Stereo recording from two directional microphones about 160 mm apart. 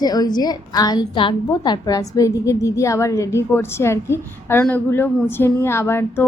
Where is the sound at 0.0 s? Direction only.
25° left (ahead or behind).